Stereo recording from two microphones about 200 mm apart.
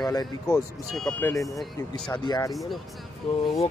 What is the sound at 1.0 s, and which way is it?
Speech, 5° left (ahead or behind).